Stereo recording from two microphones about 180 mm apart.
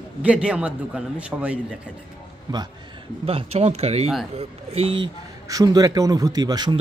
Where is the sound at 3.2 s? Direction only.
30° right (ahead or behind).